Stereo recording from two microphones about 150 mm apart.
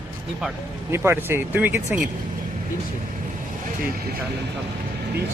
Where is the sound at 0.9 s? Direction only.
15° right (ahead or behind).